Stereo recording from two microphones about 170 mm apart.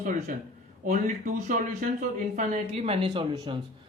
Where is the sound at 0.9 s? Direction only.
45° right (ahead or behind).